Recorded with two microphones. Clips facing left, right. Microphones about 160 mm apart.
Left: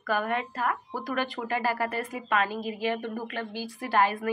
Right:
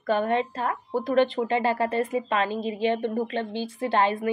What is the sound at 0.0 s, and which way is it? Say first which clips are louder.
Speech: right 5 dB; 25° right (ahead or behind).